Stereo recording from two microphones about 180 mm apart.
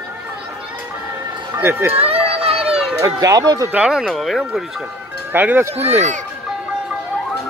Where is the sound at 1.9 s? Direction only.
35° right (ahead or behind).